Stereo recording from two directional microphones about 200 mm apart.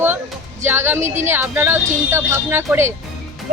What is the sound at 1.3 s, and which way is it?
Speech, 10° right (ahead or behind).